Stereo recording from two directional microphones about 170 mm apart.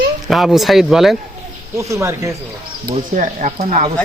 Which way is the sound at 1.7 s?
15° right (ahead or behind).